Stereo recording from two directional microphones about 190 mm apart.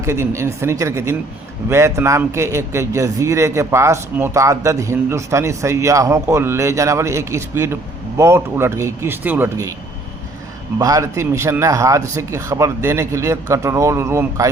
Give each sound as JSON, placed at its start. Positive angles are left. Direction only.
{"t": 0.0, "sound": "a man's voice", "side_deg": -15}
{"t": 10.8, "sound": "a man's voice", "side_deg": -20}